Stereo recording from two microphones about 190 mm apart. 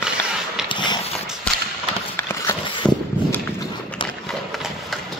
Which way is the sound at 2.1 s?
15° left (ahead or behind).